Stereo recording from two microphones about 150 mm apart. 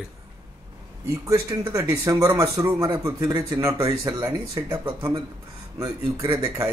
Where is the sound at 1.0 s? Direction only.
20° right (ahead or behind).